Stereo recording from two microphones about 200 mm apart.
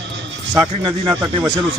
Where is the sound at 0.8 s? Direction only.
20° right (ahead or behind).